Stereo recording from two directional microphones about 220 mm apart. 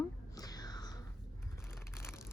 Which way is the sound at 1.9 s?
10° left (ahead or behind).